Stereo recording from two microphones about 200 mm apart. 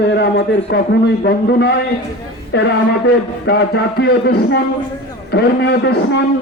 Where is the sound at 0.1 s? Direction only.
55° left (ahead or behind).